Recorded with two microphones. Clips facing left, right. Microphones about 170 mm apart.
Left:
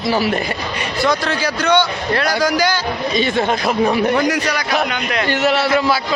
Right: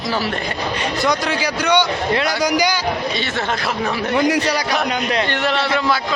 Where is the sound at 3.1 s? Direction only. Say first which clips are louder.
Left 6 dB; 15° left (ahead or behind).